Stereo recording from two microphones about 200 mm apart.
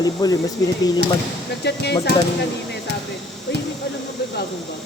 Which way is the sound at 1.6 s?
55° left (ahead or behind).